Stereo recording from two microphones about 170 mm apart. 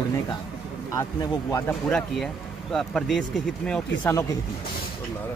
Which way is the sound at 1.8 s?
5° left (ahead or behind).